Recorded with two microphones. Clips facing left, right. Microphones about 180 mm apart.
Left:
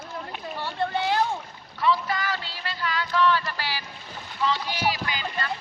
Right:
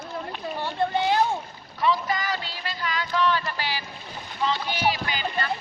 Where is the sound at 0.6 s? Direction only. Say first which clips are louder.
Right 2 dB; 15° right (ahead or behind).